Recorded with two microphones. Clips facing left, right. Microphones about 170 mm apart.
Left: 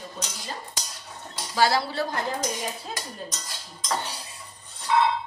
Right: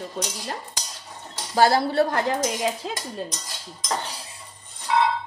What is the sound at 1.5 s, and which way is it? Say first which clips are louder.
A woman's voice: right 4 dB; 50° right (ahead or behind).